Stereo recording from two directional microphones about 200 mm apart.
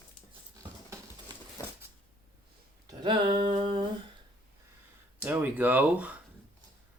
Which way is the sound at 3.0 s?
25° right (ahead or behind).